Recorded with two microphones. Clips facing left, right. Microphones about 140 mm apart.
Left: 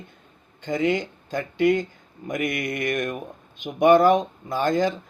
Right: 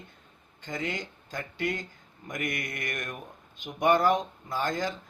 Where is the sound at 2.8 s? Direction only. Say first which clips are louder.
Left 11 dB; 80° left.